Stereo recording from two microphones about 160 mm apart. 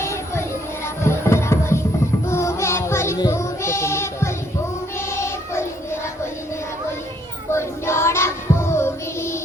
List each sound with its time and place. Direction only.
0.0 s child singing: 15° left (ahead or behind)
1.0 s music: 15° left (ahead or behind)
2.2 s child singing: 15° left (ahead or behind)
7.5 s child singing: 15° left (ahead or behind)